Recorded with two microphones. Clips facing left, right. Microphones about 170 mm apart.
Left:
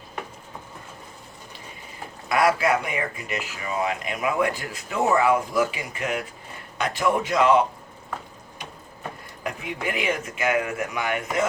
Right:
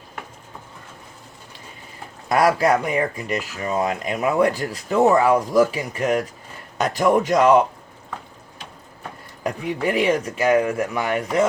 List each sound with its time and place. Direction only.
2.3 s speech: 40° right (ahead or behind)
9.4 s speech: 40° right (ahead or behind)